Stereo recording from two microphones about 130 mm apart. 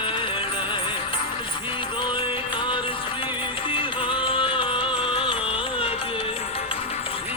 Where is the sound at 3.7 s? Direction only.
40° left (ahead or behind).